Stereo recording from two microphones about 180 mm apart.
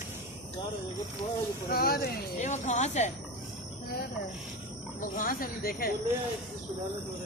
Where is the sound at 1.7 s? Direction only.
55° left (ahead or behind).